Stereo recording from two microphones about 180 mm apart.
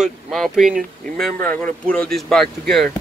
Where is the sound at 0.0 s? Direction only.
Centre (ahead or behind).